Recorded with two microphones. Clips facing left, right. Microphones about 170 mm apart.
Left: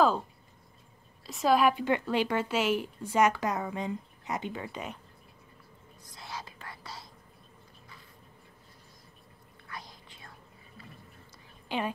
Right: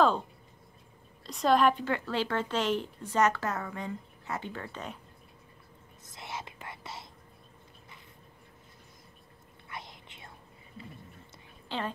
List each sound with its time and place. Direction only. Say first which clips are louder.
1.2 s a woman's voice: even; 5° left (ahead or behind)
6.1 s whispering: right 1 dB; 20° right (ahead or behind)
9.7 s whispering: right 1 dB; 25° right (ahead or behind)
10.8 s music: right 5 dB; 25° right (ahead or behind)
11.7 s a woman's voice: left 3 dB; 15° left (ahead or behind)